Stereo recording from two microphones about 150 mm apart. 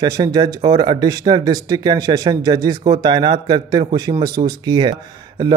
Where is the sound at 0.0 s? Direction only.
25° right (ahead or behind).